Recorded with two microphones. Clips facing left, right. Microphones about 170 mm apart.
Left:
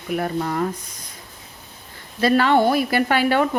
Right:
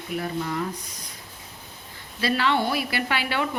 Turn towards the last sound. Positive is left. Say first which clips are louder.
# left 8 dB
turn(degrees=45)  # may be behind; listen again after turning